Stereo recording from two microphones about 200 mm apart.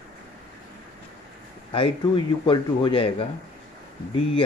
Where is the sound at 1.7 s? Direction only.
25° left (ahead or behind).